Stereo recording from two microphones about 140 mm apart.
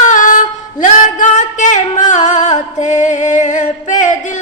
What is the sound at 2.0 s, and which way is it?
Music, 60° left (ahead or behind).